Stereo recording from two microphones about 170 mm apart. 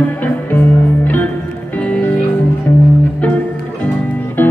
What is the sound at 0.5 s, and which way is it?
Music, 10° left (ahead or behind).